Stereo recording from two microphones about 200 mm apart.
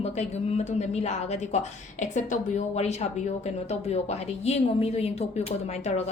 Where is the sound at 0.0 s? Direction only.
30° left (ahead or behind).